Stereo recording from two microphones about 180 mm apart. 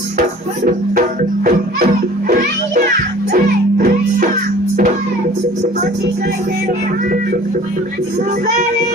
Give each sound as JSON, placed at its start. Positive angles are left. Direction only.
{"t": 0.6, "sound": "speech", "side_deg": -50}
{"t": 3.3, "sound": "music", "side_deg": -55}